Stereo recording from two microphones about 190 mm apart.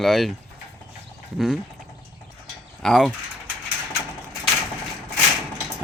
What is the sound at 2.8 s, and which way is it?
Speech, centre (ahead or behind).